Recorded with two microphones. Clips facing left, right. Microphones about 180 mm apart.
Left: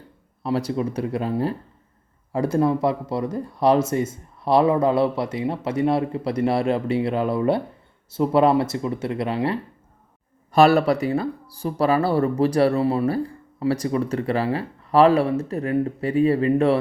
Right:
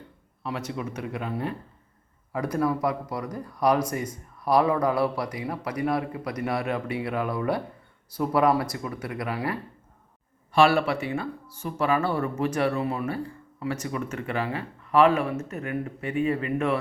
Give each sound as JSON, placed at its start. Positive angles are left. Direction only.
{"t": 0.4, "sound": "speech", "side_deg": 35}
{"t": 10.5, "sound": "speech", "side_deg": 40}